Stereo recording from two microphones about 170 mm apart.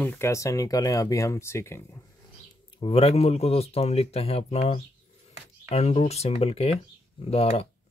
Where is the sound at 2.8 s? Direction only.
35° left (ahead or behind).